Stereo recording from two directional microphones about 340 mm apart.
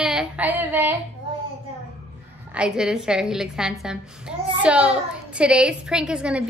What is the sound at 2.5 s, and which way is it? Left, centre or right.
A woman's voice, centre.